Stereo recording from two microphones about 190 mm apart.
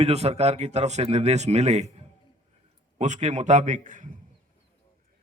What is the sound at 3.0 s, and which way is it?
A man's voice, 40° right (ahead or behind).